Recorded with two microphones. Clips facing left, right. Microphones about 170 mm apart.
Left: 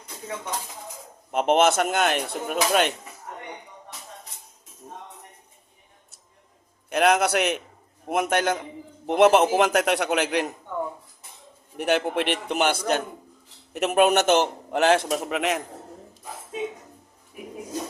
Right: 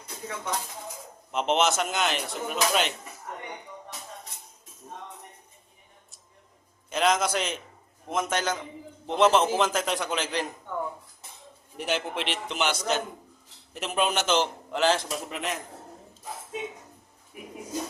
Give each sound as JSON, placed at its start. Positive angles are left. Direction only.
{"t": 1.3, "sound": "a man's voice", "side_deg": 50}
{"t": 6.9, "sound": "a man's voice", "side_deg": 60}
{"t": 11.8, "sound": "a man's voice", "side_deg": 55}
{"t": 13.7, "sound": "a man's voice", "side_deg": 65}